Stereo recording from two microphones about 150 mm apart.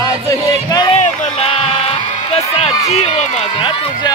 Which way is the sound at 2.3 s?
45° left (ahead or behind).